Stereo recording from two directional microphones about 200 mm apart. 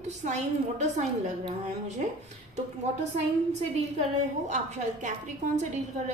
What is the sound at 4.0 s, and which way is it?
A woman's voice, 35° right (ahead or behind).